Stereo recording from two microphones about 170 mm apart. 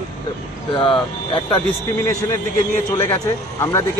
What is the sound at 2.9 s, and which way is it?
Speech, 15° left (ahead or behind).